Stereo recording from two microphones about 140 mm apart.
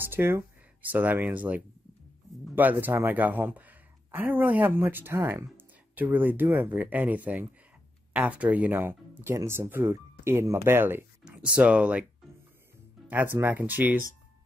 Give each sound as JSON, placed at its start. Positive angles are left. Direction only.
{"t": 0.0, "sound": "speech", "side_deg": -15}
{"t": 13.1, "sound": "speech", "side_deg": -15}